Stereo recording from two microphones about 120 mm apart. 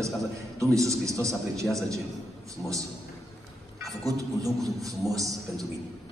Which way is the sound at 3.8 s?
25° right (ahead or behind).